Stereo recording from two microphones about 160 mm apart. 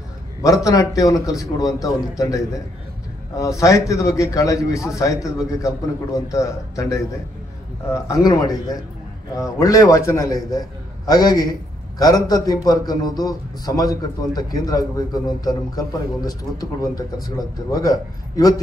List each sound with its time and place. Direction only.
0.7 s a man's voice: 20° left (ahead or behind)